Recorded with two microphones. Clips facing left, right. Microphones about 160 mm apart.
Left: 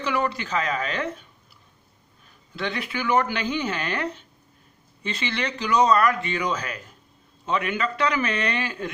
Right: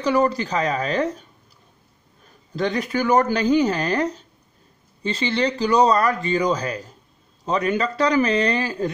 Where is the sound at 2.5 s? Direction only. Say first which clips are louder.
Right 7 dB; 40° right (ahead or behind).